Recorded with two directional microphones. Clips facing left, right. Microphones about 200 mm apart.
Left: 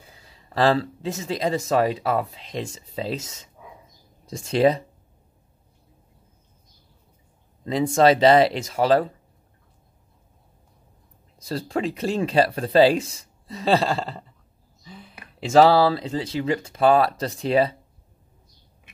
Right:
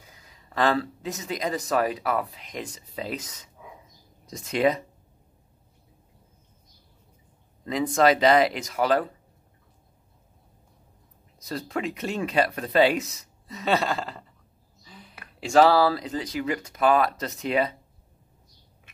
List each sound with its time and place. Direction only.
0.0 s speech: 30° left (ahead or behind)
7.6 s speech: 30° left (ahead or behind)
11.3 s speech: 30° left (ahead or behind)